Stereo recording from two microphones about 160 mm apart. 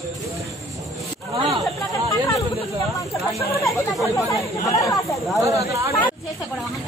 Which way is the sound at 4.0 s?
Centre (ahead or behind).